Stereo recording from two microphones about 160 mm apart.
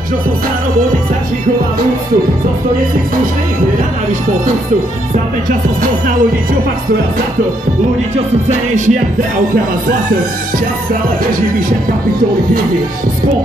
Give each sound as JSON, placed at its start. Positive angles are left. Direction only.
{"t": 8.5, "sound": "music", "side_deg": -50}